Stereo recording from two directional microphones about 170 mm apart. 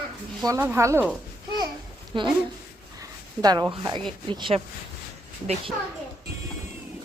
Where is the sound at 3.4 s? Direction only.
20° right (ahead or behind).